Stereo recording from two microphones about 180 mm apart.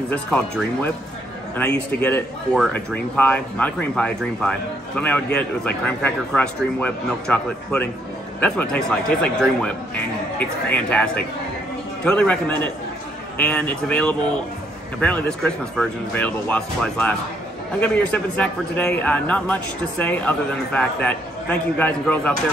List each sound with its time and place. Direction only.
0.1 s speech: 5° left (ahead or behind)
15.4 s speech: 5° left (ahead or behind)